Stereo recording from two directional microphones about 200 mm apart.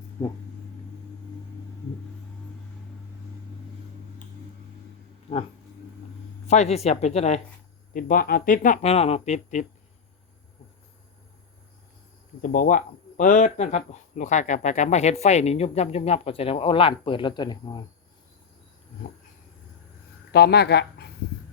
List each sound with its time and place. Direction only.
6.5 s speech: 35° left (ahead or behind)
7.9 s speech: 45° left (ahead or behind)
12.4 s speech: 45° left (ahead or behind); by 17.8 s 20° left (ahead or behind)
20.3 s speech: 55° left (ahead or behind)